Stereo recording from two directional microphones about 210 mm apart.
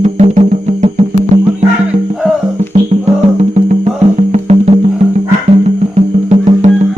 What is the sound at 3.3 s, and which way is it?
Music, 30° right (ahead or behind).